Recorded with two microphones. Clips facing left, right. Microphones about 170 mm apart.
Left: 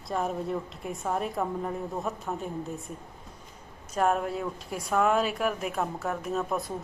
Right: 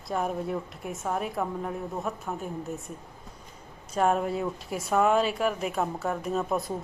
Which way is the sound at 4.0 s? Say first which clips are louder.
Right 1 dB; centre (ahead or behind).